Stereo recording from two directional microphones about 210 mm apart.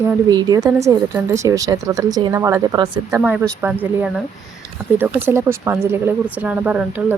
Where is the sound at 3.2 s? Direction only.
5° right (ahead or behind).